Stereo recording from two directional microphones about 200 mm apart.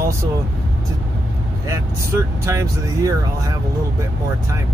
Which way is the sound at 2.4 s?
15° right (ahead or behind).